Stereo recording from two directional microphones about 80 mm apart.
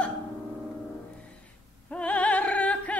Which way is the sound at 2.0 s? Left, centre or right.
Centre.